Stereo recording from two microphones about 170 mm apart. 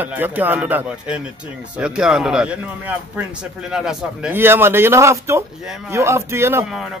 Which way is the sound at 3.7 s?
5° right (ahead or behind).